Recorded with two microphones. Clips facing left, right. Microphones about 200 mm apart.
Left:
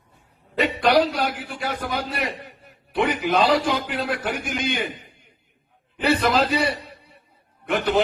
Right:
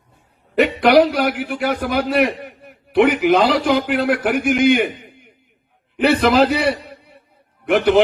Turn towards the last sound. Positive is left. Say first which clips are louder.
# right 7 dB
turn(degrees=-75)  # may be behind; listen again after turning